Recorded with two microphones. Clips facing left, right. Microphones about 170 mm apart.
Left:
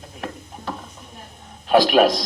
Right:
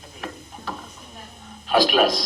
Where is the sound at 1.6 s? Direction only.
55° left (ahead or behind).